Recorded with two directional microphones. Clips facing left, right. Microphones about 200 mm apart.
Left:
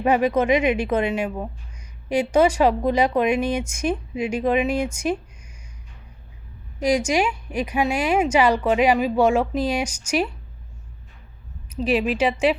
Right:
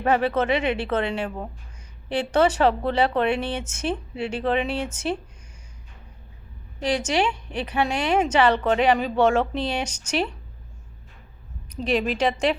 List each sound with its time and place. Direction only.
0.0 s a woman's voice: 10° left (ahead or behind)
6.7 s a woman's voice: 10° left (ahead or behind)
11.7 s a woman's voice: 5° left (ahead or behind)